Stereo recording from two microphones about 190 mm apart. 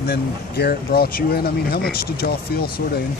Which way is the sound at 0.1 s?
55° left (ahead or behind).